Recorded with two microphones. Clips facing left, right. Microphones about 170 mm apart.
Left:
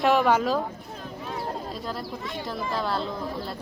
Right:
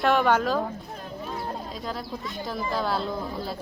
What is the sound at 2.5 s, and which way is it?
Speech, centre (ahead or behind).